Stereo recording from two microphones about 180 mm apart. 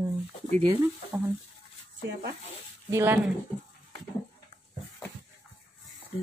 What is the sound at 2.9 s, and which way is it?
Speech, 15° right (ahead or behind).